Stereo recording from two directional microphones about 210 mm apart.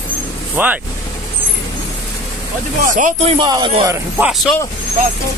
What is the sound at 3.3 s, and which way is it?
Speech, 20° right (ahead or behind).